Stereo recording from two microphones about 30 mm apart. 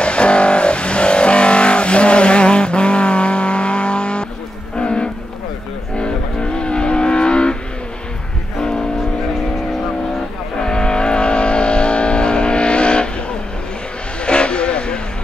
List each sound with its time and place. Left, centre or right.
0.0 s vehicle: left
10.6 s vehicle: left
14.2 s vehicle: left